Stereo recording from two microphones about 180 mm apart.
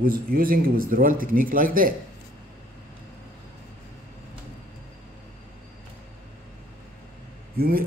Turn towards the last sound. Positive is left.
turn(degrees=-55)  # may be behind; listen again after turning